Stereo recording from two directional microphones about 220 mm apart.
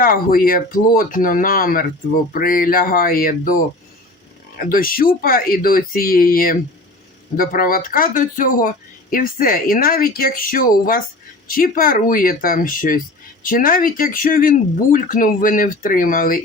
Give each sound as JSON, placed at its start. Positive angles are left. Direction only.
{"t": 0.0, "sound": "speech", "side_deg": 40}